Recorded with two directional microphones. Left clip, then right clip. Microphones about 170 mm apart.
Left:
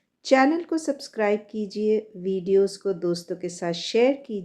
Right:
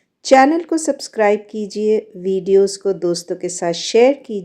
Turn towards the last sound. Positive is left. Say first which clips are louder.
# right 8 dB
turn(degrees=-40)  # may be behind; listen again after turning